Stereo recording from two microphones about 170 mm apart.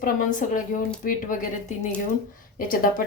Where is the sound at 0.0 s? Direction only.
50° left (ahead or behind).